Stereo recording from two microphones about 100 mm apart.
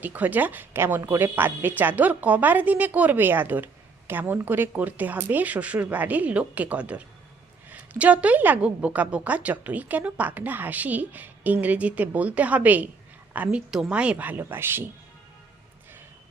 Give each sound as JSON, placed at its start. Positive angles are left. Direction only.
{"t": 0.0, "sound": "a woman's voice", "side_deg": -15}
{"t": 13.7, "sound": "a woman's voice", "side_deg": -5}